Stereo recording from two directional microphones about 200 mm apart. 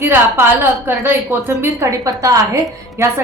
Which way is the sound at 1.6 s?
15° right (ahead or behind).